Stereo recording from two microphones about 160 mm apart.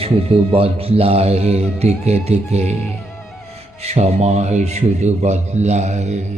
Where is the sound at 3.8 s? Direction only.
40° right (ahead or behind).